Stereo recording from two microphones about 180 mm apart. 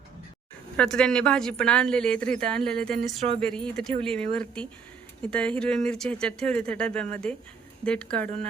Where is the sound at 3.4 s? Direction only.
5° left (ahead or behind).